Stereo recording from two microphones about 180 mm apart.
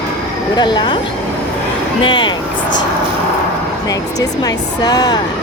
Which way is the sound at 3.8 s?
20° left (ahead or behind).